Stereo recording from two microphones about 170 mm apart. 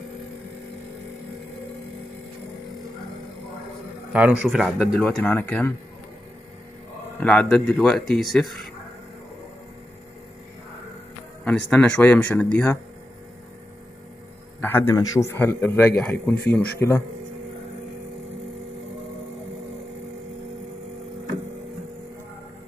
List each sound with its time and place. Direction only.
4.1 s speech: 5° right (ahead or behind)
5.0 s speech: 10° left (ahead or behind)
7.2 s speech: 5° left (ahead or behind)
11.4 s speech: 5° left (ahead or behind)
14.6 s speech: 15° left (ahead or behind)